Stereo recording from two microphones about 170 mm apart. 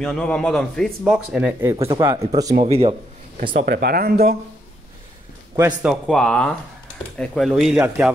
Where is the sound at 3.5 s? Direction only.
65° right (ahead or behind).